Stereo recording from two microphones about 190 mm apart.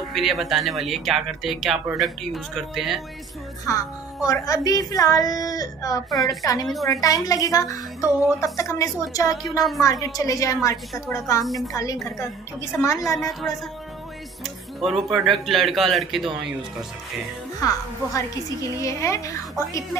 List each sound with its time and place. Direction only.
0.1 s speech: centre (ahead or behind)
3.6 s a woman's voice: 20° left (ahead or behind)
13.3 s speech: centre (ahead or behind)
14.8 s speech: centre (ahead or behind)
17.6 s a woman's voice: 15° left (ahead or behind)